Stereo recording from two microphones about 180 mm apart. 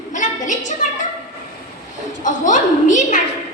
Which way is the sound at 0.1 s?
45° left (ahead or behind).